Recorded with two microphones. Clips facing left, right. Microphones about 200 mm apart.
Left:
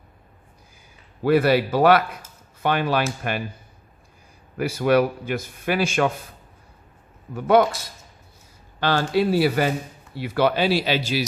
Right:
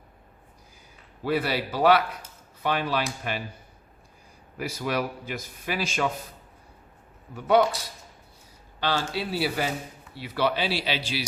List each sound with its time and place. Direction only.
1.2 s a man's voice: 55° left (ahead or behind)
4.5 s a man's voice: 55° left (ahead or behind)
7.3 s speech: 50° left (ahead or behind)
8.8 s speech: 50° left (ahead or behind)